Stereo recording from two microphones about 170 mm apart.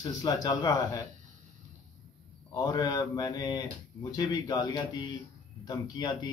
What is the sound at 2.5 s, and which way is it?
Speech, 20° left (ahead or behind).